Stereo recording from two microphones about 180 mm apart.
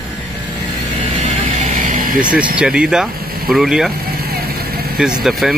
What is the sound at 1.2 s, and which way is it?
Vehicle, 45° right (ahead or behind).